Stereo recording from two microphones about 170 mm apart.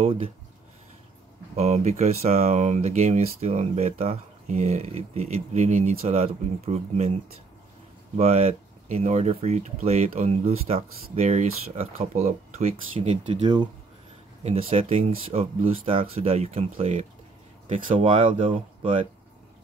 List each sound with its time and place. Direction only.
0.0 s speech: 35° right (ahead or behind)
1.6 s speech: 40° right (ahead or behind)
8.2 s speech: 40° right (ahead or behind)
14.4 s speech: 35° right (ahead or behind)